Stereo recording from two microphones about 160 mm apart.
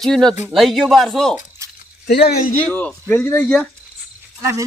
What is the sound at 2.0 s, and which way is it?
Speech, 90° left.